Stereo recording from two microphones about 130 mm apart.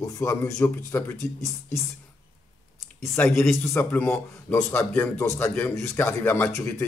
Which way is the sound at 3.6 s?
15° left (ahead or behind).